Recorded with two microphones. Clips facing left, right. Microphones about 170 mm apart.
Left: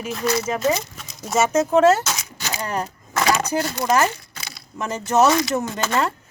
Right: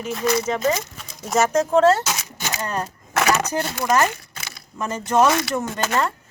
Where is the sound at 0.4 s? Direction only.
10° left (ahead or behind).